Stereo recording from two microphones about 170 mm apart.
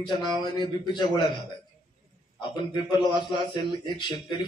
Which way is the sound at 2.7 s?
25° left (ahead or behind).